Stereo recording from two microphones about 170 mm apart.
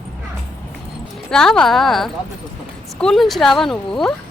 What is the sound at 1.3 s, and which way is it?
Speech, 5° left (ahead or behind).